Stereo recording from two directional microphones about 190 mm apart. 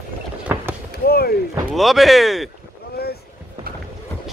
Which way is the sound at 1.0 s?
55° left (ahead or behind).